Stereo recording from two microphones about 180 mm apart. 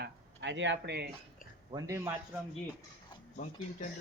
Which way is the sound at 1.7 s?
15° right (ahead or behind).